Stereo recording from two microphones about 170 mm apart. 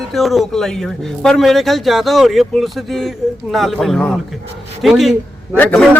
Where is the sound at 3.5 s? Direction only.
Centre (ahead or behind).